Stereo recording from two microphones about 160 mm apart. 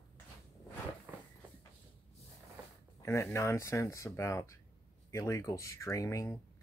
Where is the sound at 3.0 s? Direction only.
15° left (ahead or behind).